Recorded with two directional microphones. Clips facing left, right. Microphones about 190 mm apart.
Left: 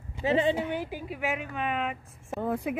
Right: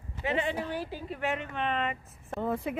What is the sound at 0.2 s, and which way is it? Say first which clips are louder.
Speech: left 5 dB; 30° left (ahead or behind).